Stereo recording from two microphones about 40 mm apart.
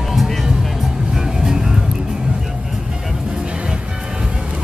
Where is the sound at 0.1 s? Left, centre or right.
Centre.